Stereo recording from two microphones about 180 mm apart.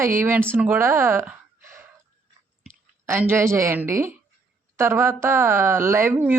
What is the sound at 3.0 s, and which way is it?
Speech, 10° right (ahead or behind).